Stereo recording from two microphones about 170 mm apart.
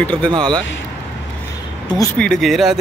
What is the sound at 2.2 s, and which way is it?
Speech, 5° left (ahead or behind).